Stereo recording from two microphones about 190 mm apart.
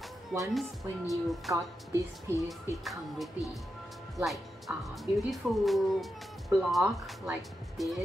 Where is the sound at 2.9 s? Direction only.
Centre (ahead or behind).